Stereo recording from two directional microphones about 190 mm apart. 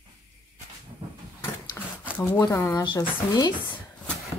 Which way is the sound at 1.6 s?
10° left (ahead or behind).